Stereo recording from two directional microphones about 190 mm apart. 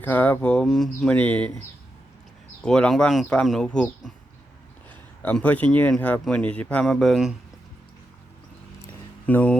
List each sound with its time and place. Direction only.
0.0 s speech: 10° left (ahead or behind)
2.6 s speech: 5° left (ahead or behind)
5.2 s speech: 5° left (ahead or behind)
9.2 s speech: 10° left (ahead or behind)